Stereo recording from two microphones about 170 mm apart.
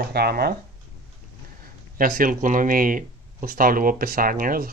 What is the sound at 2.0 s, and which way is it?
Speech, 55° right (ahead or behind).